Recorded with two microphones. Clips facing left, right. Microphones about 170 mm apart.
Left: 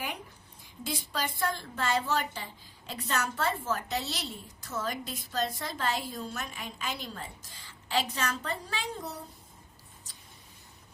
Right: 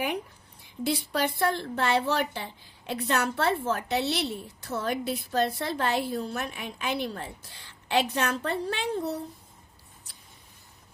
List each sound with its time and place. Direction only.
0.6 s a woman's voice: 65° right (ahead or behind)